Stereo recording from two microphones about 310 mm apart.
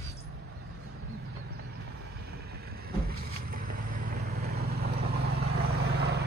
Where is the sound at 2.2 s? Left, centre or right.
Right.